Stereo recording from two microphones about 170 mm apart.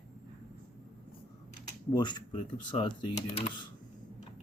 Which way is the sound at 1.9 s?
25° left (ahead or behind).